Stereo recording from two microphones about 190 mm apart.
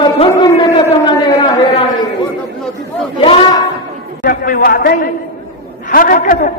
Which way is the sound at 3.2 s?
25° left (ahead or behind).